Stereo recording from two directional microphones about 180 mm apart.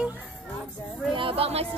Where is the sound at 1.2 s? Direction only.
30° right (ahead or behind).